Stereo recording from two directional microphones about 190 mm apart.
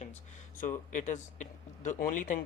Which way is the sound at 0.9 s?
40° left (ahead or behind).